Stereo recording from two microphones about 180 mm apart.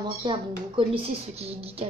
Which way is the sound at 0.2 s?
30° right (ahead or behind).